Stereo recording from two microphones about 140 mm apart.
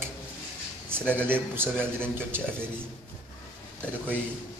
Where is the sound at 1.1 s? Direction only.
15° right (ahead or behind).